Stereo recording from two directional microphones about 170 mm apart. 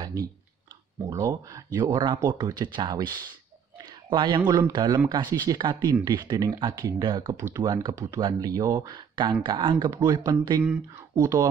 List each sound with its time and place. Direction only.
0.0 s clicking: 20° right (ahead or behind)
1.1 s speech: 20° right (ahead or behind)
3.7 s a sound: 25° right (ahead or behind)
4.5 s speech: 25° right (ahead or behind)